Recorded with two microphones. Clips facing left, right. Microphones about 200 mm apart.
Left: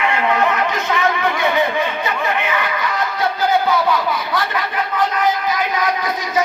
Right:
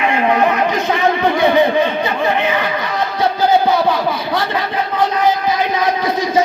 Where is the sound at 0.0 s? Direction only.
20° right (ahead or behind).